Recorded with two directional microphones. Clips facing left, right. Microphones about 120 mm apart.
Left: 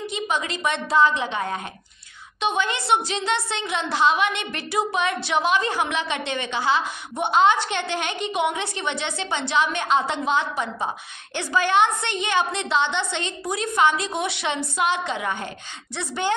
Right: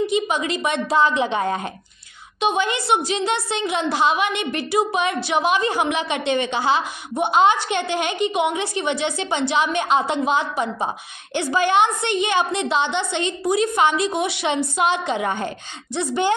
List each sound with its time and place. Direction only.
0.0 s a woman's voice: 10° right (ahead or behind); by 1.7 s 25° right (ahead or behind)
2.4 s a woman's voice: 10° right (ahead or behind); by 16.0 s 30° right (ahead or behind)
16.0 s a woman's voice: 15° right (ahead or behind)